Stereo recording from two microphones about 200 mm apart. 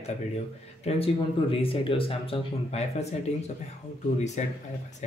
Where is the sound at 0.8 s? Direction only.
30° left (ahead or behind).